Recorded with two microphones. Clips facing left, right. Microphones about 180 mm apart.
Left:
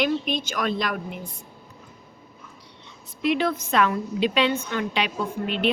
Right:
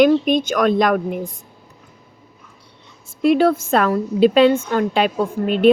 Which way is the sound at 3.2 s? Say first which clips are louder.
Right 9 dB; 40° right (ahead or behind).